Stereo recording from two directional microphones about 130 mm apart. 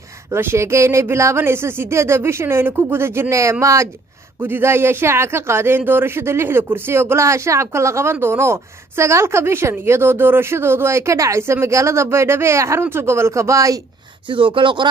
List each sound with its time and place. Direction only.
0.3 s a man's voice: 20° right (ahead or behind)
14.3 s speech: 40° right (ahead or behind)